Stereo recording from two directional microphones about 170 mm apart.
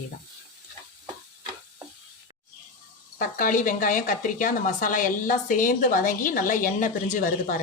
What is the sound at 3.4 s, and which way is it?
A woman's voice, 50° left (ahead or behind).